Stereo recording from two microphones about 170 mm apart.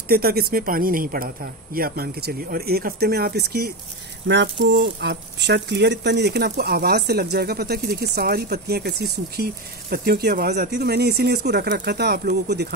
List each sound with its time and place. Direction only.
0.1 s speech: 65° right (ahead or behind)
4.3 s speech: 90° right